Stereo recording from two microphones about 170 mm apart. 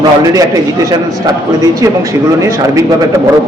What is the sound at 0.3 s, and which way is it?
Speech, 20° right (ahead or behind).